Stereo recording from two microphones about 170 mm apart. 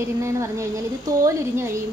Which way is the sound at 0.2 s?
15° right (ahead or behind).